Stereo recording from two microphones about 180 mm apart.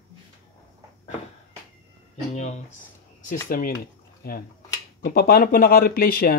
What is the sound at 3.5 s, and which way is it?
Speech, 50° left (ahead or behind).